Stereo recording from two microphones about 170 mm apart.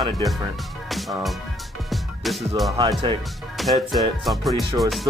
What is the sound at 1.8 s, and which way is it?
Music, centre (ahead or behind).